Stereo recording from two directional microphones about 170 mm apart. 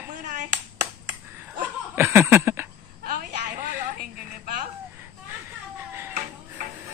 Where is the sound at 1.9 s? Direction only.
15° right (ahead or behind).